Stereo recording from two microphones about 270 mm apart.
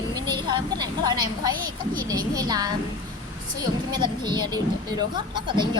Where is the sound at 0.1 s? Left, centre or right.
Centre.